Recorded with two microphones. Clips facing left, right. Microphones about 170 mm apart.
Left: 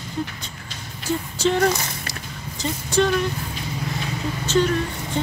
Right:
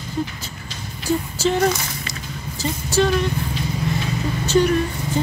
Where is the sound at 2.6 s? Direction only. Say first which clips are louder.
Right 1 dB; 5° right (ahead or behind).